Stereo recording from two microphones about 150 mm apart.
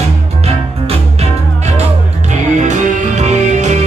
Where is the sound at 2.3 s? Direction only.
55° right (ahead or behind).